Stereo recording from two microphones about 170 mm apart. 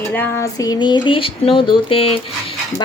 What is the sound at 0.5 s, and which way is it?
Speech, 20° left (ahead or behind).